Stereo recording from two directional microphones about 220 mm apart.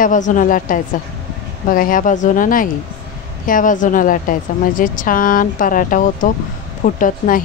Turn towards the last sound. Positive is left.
turn(degrees=35)  # may be behind; listen again after turning